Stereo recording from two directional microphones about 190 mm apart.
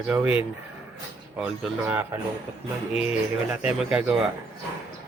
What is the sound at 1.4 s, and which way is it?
Speech, 5° right (ahead or behind).